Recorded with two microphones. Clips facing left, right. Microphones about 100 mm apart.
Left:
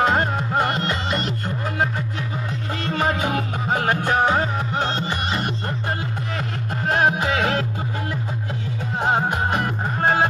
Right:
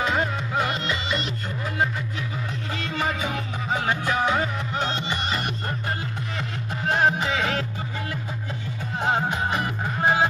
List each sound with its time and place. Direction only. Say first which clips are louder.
0.0 s music: left 5 dB; 50° left (ahead or behind)
2.8 s music: left 5 dB; 45° left (ahead or behind)
6.9 s music: left 2 dB; 55° left (ahead or behind)
9.3 s music: left 3 dB; 40° left (ahead or behind)